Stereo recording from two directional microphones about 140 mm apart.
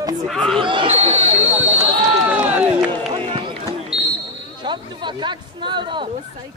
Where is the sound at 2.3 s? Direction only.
10° right (ahead or behind).